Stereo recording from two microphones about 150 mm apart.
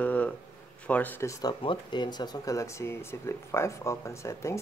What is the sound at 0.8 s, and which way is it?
Speech, 10° left (ahead or behind).